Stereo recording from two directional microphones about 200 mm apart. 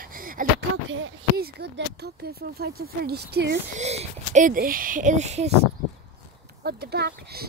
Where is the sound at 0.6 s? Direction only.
70° right (ahead or behind).